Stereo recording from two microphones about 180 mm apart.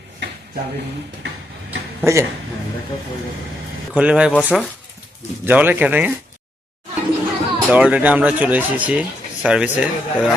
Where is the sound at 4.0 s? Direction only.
5° right (ahead or behind).